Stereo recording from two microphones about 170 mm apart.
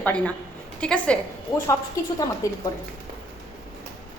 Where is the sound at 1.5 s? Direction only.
20° left (ahead or behind).